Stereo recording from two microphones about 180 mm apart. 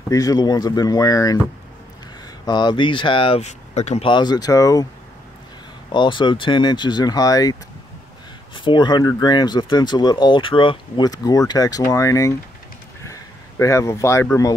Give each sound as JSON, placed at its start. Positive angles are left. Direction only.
{"t": 0.1, "sound": "speech", "side_deg": 20}
{"t": 2.4, "sound": "speech", "side_deg": 25}
{"t": 4.1, "sound": "speech", "side_deg": 25}
{"t": 5.9, "sound": "speech", "side_deg": 25}
{"t": 8.5, "sound": "speech", "side_deg": 25}
{"t": 13.0, "sound": "a sound", "side_deg": 20}